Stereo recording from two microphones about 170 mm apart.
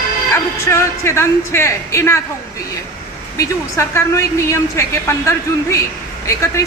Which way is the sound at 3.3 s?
20° left (ahead or behind).